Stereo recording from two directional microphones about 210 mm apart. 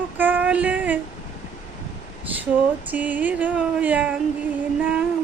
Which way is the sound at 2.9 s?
10° right (ahead or behind).